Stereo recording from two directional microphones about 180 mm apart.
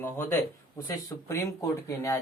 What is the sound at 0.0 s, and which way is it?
Speech, 10° left (ahead or behind).